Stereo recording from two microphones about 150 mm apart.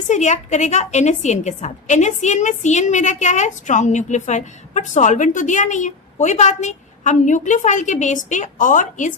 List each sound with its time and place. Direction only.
0.1 s a woman's voice: 50° left (ahead or behind)